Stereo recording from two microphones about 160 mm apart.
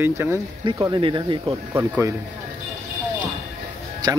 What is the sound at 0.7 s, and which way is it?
Speech, 25° right (ahead or behind).